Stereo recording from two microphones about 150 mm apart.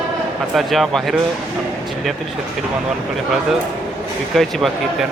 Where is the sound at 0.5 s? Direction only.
Centre (ahead or behind).